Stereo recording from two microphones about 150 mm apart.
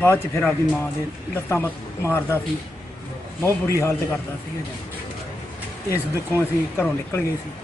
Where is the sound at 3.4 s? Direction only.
20° left (ahead or behind).